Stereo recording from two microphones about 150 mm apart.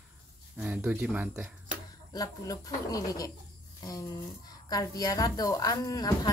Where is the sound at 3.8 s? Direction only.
25° left (ahead or behind).